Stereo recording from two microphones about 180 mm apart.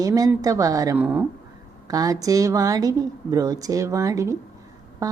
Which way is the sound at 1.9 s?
20° right (ahead or behind).